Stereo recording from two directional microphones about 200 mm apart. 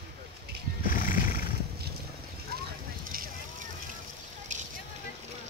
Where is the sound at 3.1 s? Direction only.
45° right (ahead or behind).